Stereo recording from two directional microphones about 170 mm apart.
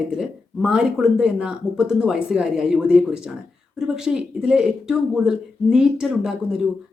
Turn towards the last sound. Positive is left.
turn(degrees=-5)  # may be behind; listen again after turning